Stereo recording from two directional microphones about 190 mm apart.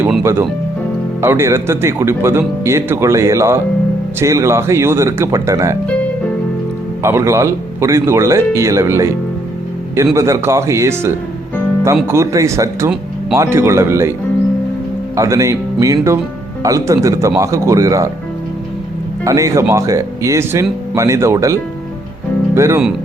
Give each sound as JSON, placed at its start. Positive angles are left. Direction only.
{"t": 0.0, "sound": "speech", "side_deg": -10}
{"t": 7.0, "sound": "speech", "side_deg": -15}
{"t": 10.2, "sound": "speech", "side_deg": -15}
{"t": 15.1, "sound": "speech", "side_deg": -15}
{"t": 19.2, "sound": "speech", "side_deg": -15}